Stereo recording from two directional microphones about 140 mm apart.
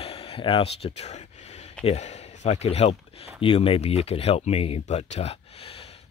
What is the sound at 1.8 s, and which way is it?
Speech, 50° left (ahead or behind).